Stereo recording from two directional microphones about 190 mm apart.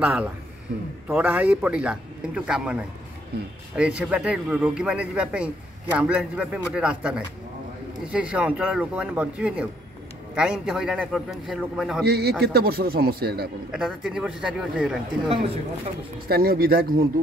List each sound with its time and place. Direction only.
0.0 s a man's voice: 5° right (ahead or behind)
12.0 s a man's voice: 55° right (ahead or behind)
13.7 s speech: 5° right (ahead or behind)
16.3 s speech: 50° right (ahead or behind)